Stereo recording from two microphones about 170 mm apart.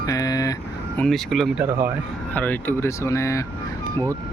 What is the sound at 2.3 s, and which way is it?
Speech, 10° left (ahead or behind).